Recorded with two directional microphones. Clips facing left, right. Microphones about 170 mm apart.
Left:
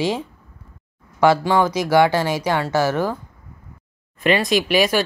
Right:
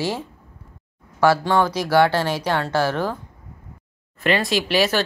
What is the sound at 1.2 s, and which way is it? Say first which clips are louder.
Speech: left 2 dB; 15° left (ahead or behind).